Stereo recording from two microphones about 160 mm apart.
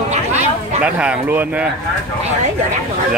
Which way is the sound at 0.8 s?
10° right (ahead or behind).